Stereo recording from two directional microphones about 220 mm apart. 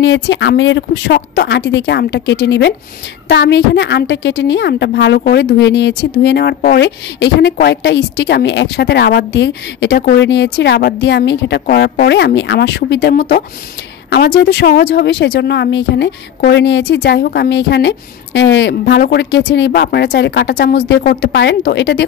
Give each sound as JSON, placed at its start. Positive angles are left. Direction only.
{"t": 0.0, "sound": "speech", "side_deg": 55}